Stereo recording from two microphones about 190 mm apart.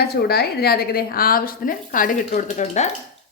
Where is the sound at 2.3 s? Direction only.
35° left (ahead or behind).